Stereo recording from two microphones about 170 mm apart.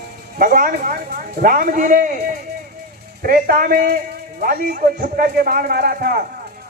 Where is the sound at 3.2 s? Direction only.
60° right (ahead or behind).